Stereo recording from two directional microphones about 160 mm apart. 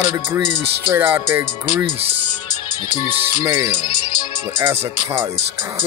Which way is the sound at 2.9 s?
30° left (ahead or behind).